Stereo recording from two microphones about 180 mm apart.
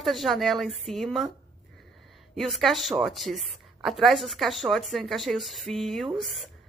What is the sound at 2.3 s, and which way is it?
A woman's voice, centre (ahead or behind).